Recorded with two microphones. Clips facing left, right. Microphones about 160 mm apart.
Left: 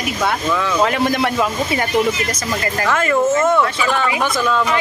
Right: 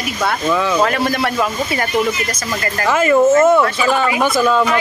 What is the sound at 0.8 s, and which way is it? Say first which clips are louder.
Speech: even; 20° left (ahead or behind).